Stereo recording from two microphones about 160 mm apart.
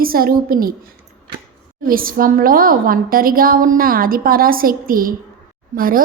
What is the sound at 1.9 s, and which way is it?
A woman's voice, 65° right (ahead or behind).